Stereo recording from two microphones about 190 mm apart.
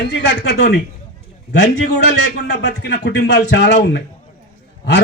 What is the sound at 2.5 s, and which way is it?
A man's voice, 60° left (ahead or behind).